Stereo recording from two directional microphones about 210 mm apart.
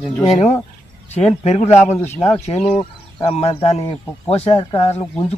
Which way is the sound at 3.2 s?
30° left (ahead or behind).